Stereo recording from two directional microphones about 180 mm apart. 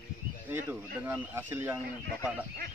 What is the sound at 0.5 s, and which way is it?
Speech, 10° right (ahead or behind).